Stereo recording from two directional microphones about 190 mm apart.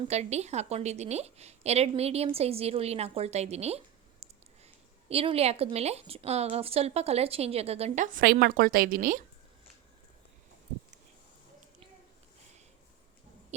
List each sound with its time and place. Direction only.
0.1 s speech: 35° right (ahead or behind)